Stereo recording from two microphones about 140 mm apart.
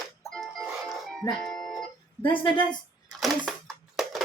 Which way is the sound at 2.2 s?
35° left (ahead or behind).